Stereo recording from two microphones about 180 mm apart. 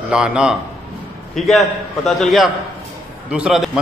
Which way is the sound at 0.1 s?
5° right (ahead or behind).